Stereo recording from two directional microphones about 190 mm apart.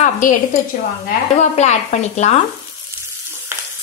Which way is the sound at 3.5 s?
10° right (ahead or behind).